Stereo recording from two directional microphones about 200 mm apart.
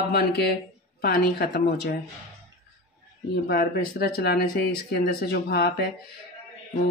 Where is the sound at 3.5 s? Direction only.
50° left (ahead or behind).